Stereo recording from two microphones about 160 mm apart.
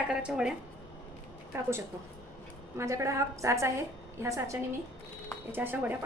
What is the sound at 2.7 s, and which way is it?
A woman's voice, 20° right (ahead or behind).